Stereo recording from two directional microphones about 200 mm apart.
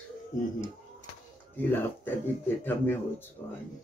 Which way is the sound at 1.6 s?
10° left (ahead or behind).